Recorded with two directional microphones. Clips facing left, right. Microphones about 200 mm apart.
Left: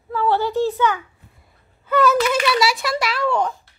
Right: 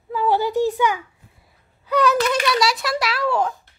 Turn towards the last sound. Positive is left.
turn(degrees=-5)  # may be behind; listen again after turning